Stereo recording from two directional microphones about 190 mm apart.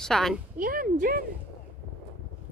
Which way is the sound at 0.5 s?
45° right (ahead or behind).